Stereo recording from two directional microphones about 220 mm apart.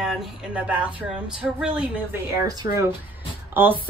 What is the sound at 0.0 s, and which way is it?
Speech, 5° right (ahead or behind).